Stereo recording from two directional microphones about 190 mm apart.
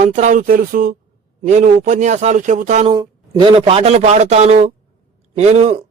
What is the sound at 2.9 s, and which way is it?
Speech, 25° right (ahead or behind).